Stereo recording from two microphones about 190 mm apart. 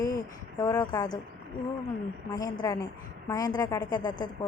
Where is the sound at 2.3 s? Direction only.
20° left (ahead or behind).